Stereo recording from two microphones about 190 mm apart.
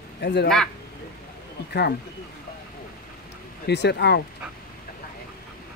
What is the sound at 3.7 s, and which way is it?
Speech, 60° left (ahead or behind).